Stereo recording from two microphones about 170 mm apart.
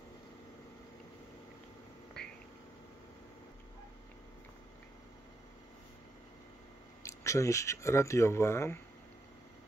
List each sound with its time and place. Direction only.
7.0 s speech: 15° left (ahead or behind)